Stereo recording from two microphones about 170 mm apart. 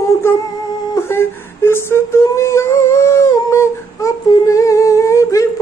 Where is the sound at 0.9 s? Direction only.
15° left (ahead or behind).